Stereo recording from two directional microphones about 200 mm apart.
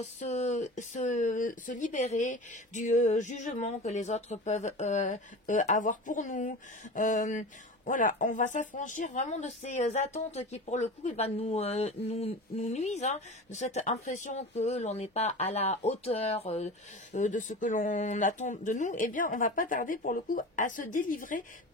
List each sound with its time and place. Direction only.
0.0 s speech: 35° left (ahead or behind)